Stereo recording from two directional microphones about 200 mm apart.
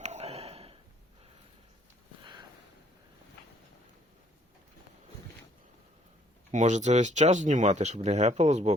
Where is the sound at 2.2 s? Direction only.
25° right (ahead or behind).